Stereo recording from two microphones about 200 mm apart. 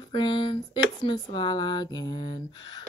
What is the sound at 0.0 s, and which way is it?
Speech, 25° left (ahead or behind).